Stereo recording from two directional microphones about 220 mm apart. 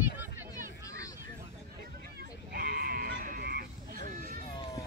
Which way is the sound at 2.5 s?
45° right (ahead or behind).